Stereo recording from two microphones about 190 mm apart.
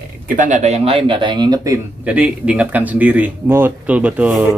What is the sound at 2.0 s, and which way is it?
Speech, 5° right (ahead or behind).